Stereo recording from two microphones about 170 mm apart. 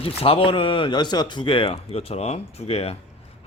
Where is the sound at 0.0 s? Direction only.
35° left (ahead or behind).